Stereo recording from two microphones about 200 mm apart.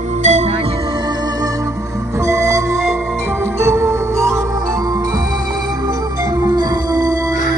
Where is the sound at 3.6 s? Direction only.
15° right (ahead or behind).